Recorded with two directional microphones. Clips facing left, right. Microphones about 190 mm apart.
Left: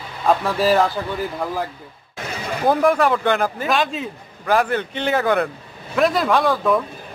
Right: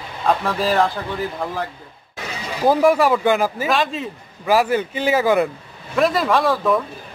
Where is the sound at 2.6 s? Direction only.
5° right (ahead or behind).